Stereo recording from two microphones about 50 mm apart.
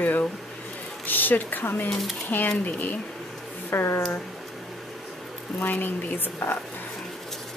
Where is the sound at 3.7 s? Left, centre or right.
Left.